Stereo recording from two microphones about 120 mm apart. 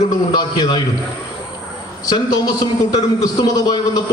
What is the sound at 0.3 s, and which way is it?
Speech, 35° left (ahead or behind).